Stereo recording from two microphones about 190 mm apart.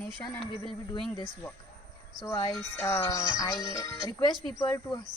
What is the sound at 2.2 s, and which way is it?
Music, 15° left (ahead or behind).